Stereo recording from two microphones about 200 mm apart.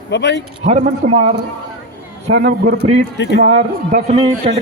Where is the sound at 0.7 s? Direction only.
35° right (ahead or behind).